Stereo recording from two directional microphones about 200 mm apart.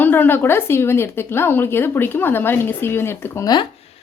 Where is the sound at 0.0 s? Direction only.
10° left (ahead or behind).